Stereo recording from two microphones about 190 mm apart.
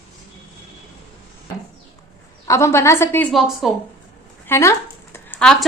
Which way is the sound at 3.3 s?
Centre (ahead or behind).